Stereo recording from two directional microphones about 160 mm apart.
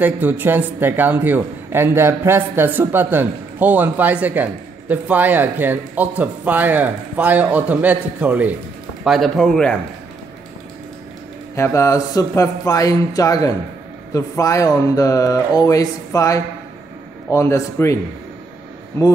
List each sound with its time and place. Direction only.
0.0 s speech: 10° right (ahead or behind)
9.0 s speech: centre (ahead or behind)
11.5 s speech: 20° left (ahead or behind)